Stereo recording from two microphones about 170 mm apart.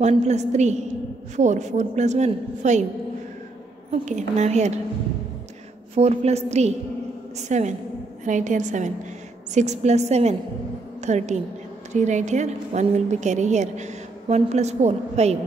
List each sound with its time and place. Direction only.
0.0 s a woman's voice: 40° right (ahead or behind)
3.9 s a woman's voice: 45° right (ahead or behind)
5.9 s a woman's voice: 40° right (ahead or behind)